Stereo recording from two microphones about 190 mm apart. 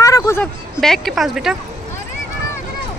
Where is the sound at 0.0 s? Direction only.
15° left (ahead or behind).